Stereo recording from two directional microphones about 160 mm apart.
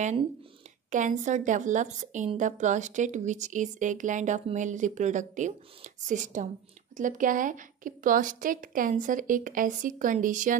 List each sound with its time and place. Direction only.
0.8 s a woman's voice: 50° right (ahead or behind)